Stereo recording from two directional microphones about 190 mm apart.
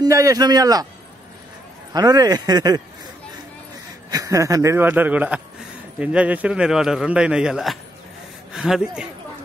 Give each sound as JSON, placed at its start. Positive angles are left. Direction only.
{"t": 0.0, "sound": "speech", "side_deg": -15}
{"t": 2.0, "sound": "speech", "side_deg": -20}
{"t": 4.1, "sound": "a man's voice", "side_deg": -15}